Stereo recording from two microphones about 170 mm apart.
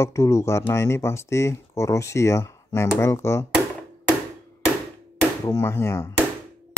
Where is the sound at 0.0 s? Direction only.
15° left (ahead or behind).